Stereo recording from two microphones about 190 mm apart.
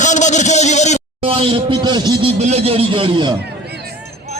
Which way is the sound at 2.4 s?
35° right (ahead or behind).